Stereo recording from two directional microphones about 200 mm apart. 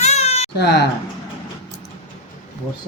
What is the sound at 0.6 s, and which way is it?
Speech, 55° left (ahead or behind).